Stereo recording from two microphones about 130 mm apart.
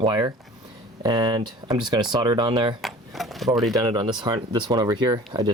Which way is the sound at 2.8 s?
Centre (ahead or behind).